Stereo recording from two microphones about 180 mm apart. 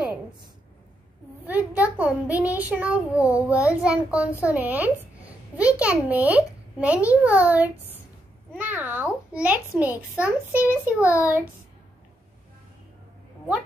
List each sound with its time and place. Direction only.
1.4 s a child's voice: 10° right (ahead or behind)
3.4 s a child's voice: 15° left (ahead or behind)
3.8 s a child's voice: 5° right (ahead or behind)